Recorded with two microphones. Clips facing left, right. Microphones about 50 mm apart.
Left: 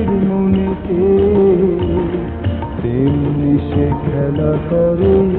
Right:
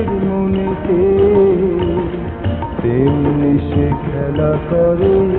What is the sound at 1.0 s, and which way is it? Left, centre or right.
Music of bollywood, centre.